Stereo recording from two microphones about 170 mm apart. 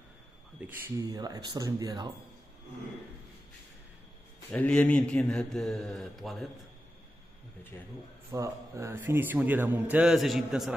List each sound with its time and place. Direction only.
0.6 s a man's voice: 10° right (ahead or behind)
4.5 s speech: 5° left (ahead or behind)
8.3 s a man's voice: 15° right (ahead or behind); by 10.7 s centre (ahead or behind)